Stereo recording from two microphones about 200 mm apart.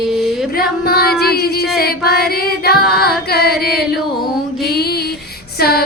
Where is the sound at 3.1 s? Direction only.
50° left (ahead or behind).